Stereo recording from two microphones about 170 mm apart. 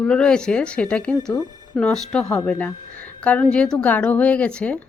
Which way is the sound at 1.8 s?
5° left (ahead or behind).